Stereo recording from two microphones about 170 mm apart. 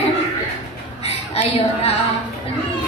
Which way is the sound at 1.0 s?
40° left (ahead or behind).